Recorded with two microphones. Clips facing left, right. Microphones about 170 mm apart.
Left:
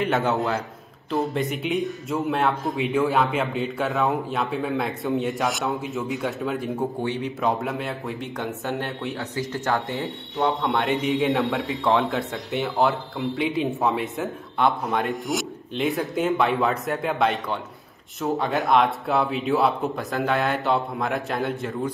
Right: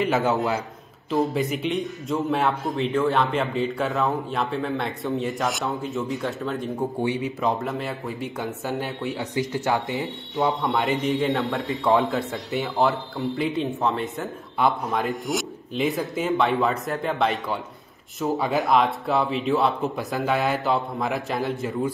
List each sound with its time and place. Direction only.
0.0 s a man's voice: centre (ahead or behind)
7.0 s a man's voice: 10° right (ahead or behind)
9.2 s speech: 15° right (ahead or behind)
9.8 s a man's voice: centre (ahead or behind)